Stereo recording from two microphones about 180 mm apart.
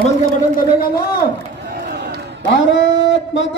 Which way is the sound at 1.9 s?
60° right (ahead or behind).